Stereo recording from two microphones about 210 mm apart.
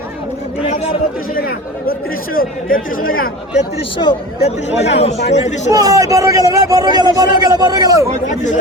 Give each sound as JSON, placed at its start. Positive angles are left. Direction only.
{"t": 0.6, "sound": "speech", "side_deg": 25}
{"t": 1.4, "sound": "speech", "side_deg": 45}
{"t": 3.8, "sound": "speech", "side_deg": 25}
{"t": 5.7, "sound": "a man's voice", "side_deg": -15}